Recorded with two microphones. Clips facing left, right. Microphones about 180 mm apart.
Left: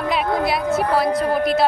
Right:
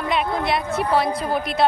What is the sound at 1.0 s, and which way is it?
Speech, centre (ahead or behind).